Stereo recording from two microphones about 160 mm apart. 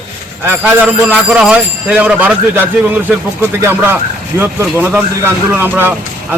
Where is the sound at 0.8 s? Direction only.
5° right (ahead or behind).